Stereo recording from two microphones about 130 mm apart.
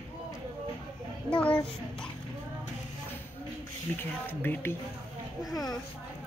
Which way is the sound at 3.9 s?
15° left (ahead or behind).